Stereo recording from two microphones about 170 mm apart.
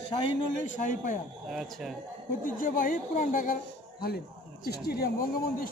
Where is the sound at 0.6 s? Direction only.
50° left (ahead or behind).